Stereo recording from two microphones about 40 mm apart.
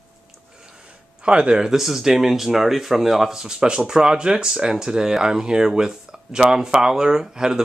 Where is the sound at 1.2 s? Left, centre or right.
Right.